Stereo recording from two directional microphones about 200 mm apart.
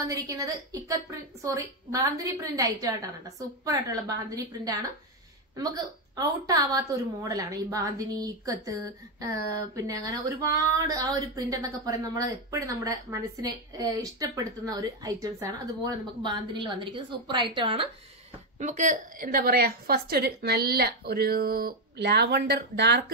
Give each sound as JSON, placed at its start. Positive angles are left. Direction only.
{"t": 0.0, "sound": "speech", "side_deg": -15}
{"t": 5.6, "sound": "speech", "side_deg": -20}
{"t": 18.6, "sound": "a woman's voice", "side_deg": -40}